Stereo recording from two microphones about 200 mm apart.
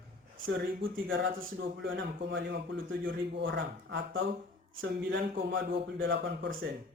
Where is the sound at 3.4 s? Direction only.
65° right (ahead or behind).